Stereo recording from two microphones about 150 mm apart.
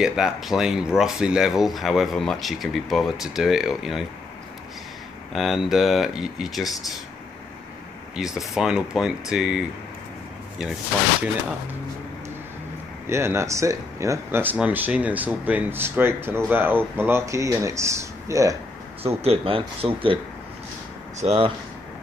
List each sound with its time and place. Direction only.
0.0 s speech: 5° right (ahead or behind)
5.3 s speech: centre (ahead or behind)
8.2 s speech: 5° right (ahead or behind)
13.0 s speech: 15° right (ahead or behind)
19.0 s speech: 40° right (ahead or behind)
21.2 s speech: 45° right (ahead or behind)